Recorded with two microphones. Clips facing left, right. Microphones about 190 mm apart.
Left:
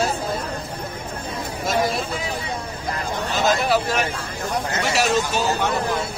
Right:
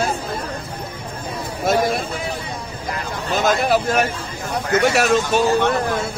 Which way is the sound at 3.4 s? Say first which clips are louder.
Right 2 dB; 50° right (ahead or behind).